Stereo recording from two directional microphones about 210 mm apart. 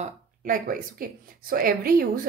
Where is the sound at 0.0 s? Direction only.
40° right (ahead or behind).